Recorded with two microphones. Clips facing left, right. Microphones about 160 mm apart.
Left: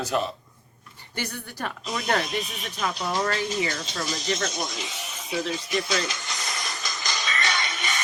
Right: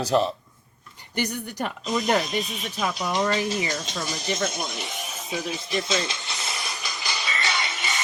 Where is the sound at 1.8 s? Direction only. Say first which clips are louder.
Right 3 dB; centre (ahead or behind).